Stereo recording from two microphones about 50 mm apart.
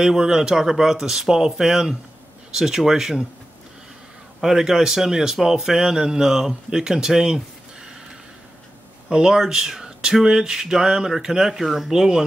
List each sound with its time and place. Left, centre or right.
0.0 s a man's voice: centre
4.4 s a man's voice: centre
9.1 s a man's voice: centre